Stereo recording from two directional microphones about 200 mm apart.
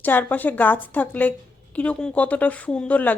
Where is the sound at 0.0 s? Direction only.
10° left (ahead or behind).